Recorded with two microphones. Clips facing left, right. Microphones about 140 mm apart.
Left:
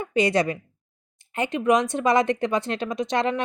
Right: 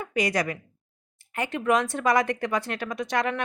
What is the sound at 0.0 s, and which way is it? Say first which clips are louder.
Speech: left 5 dB; 25° left (ahead or behind).